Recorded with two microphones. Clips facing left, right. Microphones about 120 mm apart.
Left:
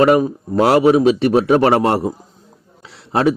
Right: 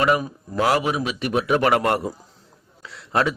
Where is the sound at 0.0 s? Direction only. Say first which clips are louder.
Left 8 dB; 35° left (ahead or behind).